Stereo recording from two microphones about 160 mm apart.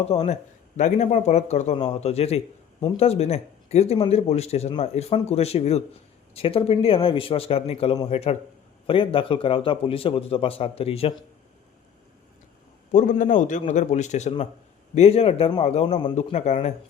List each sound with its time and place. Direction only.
0.0 s a man's voice: 40° left (ahead or behind)
12.9 s a man's voice: 50° left (ahead or behind)